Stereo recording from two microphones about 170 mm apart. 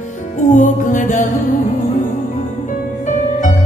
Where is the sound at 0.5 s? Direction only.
50° left (ahead or behind).